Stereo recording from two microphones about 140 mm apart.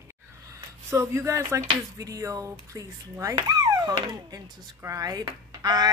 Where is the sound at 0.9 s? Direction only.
20° right (ahead or behind).